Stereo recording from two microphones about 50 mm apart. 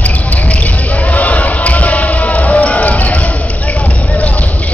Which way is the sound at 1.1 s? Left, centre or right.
Left.